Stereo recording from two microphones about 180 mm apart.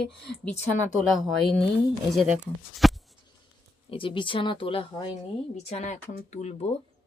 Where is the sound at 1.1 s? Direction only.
Centre (ahead or behind).